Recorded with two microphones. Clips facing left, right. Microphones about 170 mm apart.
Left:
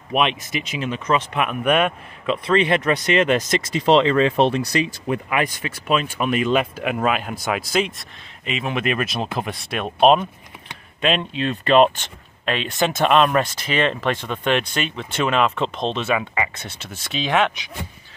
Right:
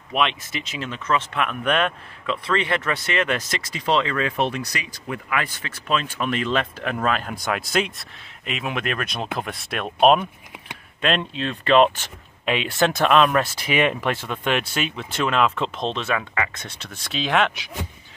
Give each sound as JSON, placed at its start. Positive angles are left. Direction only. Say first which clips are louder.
{"t": 0.1, "sound": "a man's voice", "louder": "left 3 dB", "side_deg": 15}
{"t": 12.4, "sound": "speech", "louder": "right 1 dB", "side_deg": -10}
{"t": 13.6, "sound": "speech", "louder": "even", "side_deg": -10}